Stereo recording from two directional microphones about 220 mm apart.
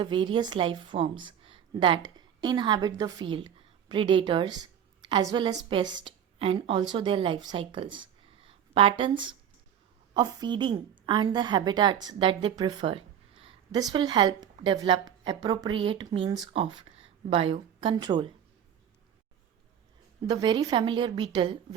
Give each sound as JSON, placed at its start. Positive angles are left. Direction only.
{"t": 0.0, "sound": "a woman's voice", "side_deg": -20}
{"t": 20.2, "sound": "a woman's voice", "side_deg": -20}